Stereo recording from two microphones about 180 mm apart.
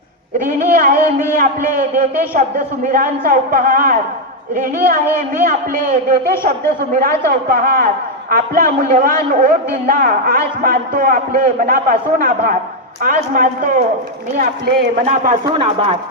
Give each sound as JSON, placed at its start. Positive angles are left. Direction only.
{"t": 0.3, "sound": "a man's voice", "side_deg": -45}
{"t": 15.0, "sound": "a man's voice", "side_deg": -50}
{"t": 15.4, "sound": "speech", "side_deg": -30}